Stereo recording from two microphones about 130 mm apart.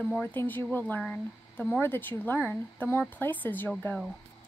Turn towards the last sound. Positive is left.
turn(degrees=10)  # may be behind; listen again after turning